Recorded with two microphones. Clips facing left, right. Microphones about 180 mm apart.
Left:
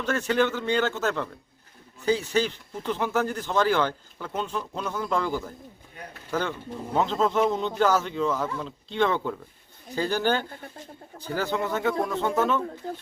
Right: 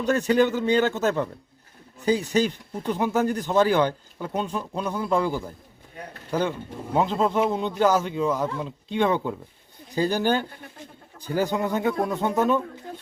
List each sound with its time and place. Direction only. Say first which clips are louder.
0.0 s speech: right 4 dB; 15° right (ahead or behind)
4.3 s speech: right 3 dB; 40° right (ahead or behind)
4.5 s speech: right 2 dB; 15° right (ahead or behind)
6.9 s speech: right 1 dB; 10° right (ahead or behind)